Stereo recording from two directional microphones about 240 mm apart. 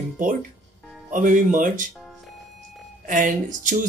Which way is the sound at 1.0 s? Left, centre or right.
Right.